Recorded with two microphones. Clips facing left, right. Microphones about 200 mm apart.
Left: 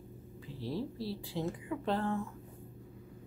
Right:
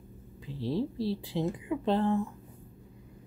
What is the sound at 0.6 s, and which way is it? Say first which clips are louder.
A woman's voice: right 7 dB; 25° right (ahead or behind).